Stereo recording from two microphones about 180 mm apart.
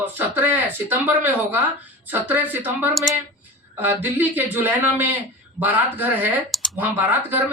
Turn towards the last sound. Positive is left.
turn(degrees=-10)  # may be behind; listen again after turning